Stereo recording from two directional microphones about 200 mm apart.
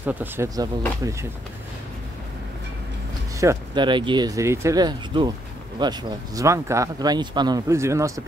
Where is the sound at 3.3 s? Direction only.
15° right (ahead or behind).